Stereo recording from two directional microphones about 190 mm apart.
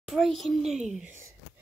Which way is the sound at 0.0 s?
Centre (ahead or behind).